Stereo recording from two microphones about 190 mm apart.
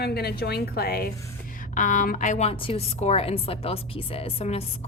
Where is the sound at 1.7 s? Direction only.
45° left (ahead or behind).